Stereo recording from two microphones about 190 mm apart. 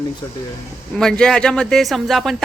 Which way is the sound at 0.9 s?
5° left (ahead or behind).